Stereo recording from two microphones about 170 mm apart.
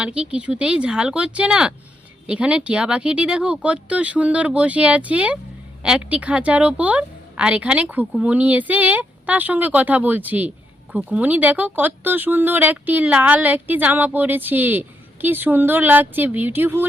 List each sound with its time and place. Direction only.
0.0 s speech: 5° right (ahead or behind)